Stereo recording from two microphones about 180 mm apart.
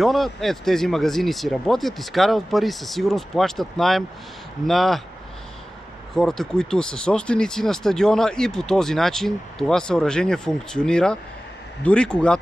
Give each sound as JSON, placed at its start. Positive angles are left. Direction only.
{"t": 0.0, "sound": "speech", "side_deg": 0}
{"t": 6.1, "sound": "speech", "side_deg": 0}